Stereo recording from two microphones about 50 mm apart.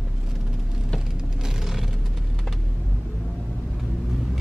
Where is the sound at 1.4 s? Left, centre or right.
Centre.